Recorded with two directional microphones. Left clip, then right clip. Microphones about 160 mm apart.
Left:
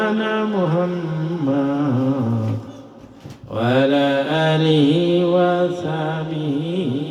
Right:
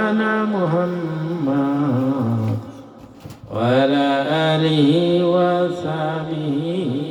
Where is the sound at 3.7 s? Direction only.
35° right (ahead or behind).